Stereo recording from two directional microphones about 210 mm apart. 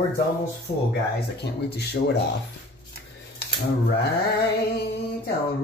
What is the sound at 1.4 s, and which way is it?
Speech, 50° left (ahead or behind).